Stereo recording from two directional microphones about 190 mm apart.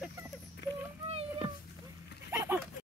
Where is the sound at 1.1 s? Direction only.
30° right (ahead or behind).